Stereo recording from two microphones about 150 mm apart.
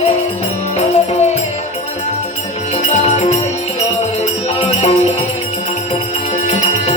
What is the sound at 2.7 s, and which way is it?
Music, 45° left (ahead or behind).